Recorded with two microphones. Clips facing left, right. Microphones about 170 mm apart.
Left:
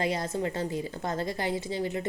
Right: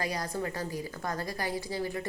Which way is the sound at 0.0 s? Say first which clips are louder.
Left 4 dB; 25° left (ahead or behind).